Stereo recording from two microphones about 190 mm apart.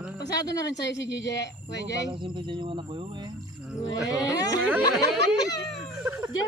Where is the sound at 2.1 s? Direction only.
25° right (ahead or behind).